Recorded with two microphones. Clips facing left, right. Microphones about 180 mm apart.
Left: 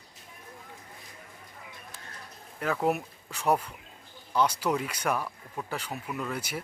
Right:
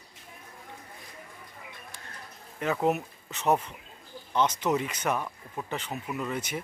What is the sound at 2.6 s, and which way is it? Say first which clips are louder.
Speech: right 1 dB; 5° right (ahead or behind).